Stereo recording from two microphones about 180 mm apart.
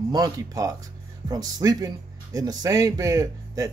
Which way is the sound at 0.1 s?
20° right (ahead or behind).